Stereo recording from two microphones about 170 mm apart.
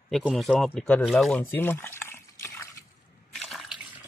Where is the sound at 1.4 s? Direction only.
10° left (ahead or behind).